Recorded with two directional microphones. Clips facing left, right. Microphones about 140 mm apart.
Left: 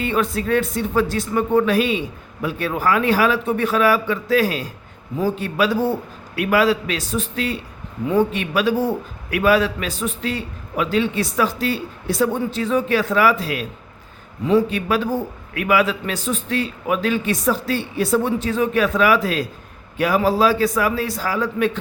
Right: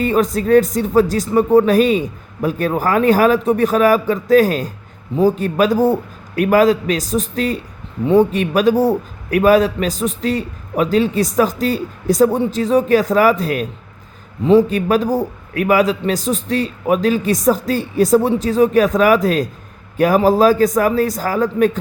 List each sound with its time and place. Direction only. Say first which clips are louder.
0.0 s a man's voice: right 5 dB; 40° right (ahead or behind)